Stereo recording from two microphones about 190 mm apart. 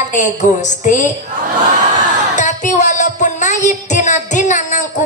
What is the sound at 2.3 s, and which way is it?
Music, 40° left (ahead or behind).